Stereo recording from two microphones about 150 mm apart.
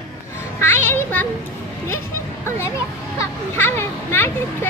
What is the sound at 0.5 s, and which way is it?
Children playing, 15° left (ahead or behind).